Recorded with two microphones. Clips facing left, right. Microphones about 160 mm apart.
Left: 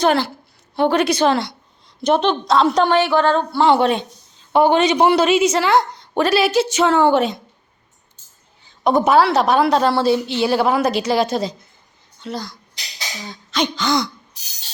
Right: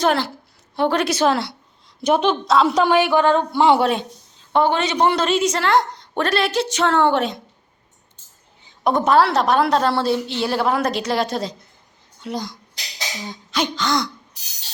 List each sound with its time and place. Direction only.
0.0 s a woman's voice: centre (ahead or behind)
4.5 s a woman's voice: 15° left (ahead or behind)
8.8 s a woman's voice: 5° left (ahead or behind)
12.2 s a woman's voice: 15° right (ahead or behind)
13.7 s a woman's voice: centre (ahead or behind)